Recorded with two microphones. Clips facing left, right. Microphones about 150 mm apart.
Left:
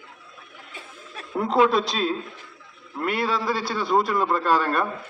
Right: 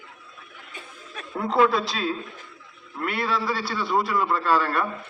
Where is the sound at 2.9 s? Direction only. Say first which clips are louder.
Left 2 dB; 15° left (ahead or behind).